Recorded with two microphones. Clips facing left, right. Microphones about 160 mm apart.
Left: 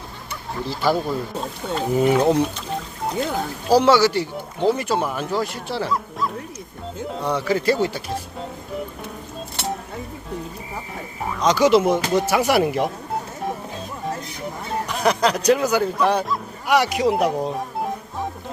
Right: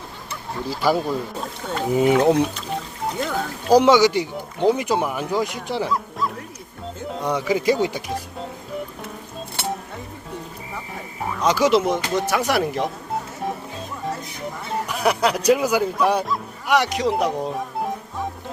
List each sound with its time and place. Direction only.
0.7 s speech: centre (ahead or behind)
1.9 s speech: 15° right (ahead or behind)
3.7 s speech: 15° right (ahead or behind)
5.9 s speech: centre (ahead or behind)
7.2 s speech: 15° right (ahead or behind)
10.8 s speech: centre (ahead or behind)
14.8 s speech: 10° right (ahead or behind)
16.6 s speech: 5° left (ahead or behind)